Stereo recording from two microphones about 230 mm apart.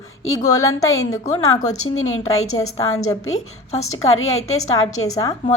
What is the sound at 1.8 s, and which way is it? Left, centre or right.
Speech, left.